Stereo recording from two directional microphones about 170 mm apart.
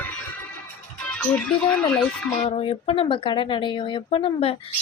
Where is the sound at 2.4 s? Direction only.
35° left (ahead or behind).